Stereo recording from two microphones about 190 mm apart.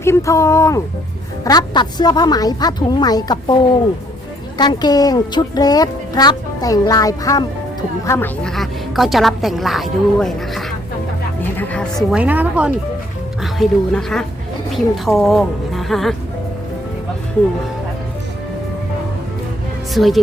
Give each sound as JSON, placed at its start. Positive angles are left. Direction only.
{"t": 0.0, "sound": "speech", "side_deg": 15}
{"t": 8.4, "sound": "a woman's voice", "side_deg": 0}
{"t": 19.9, "sound": "speech", "side_deg": 0}